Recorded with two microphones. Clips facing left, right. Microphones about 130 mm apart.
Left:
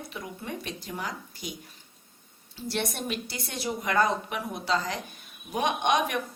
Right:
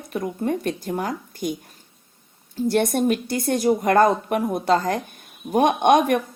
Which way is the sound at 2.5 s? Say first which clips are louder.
Right 12 dB; 50° right (ahead or behind).